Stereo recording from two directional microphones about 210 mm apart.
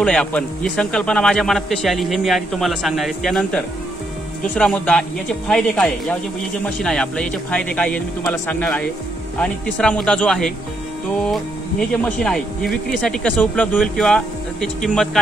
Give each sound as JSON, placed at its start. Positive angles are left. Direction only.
{"t": 0.0, "sound": "speech", "side_deg": 5}
{"t": 11.9, "sound": "speech", "side_deg": 5}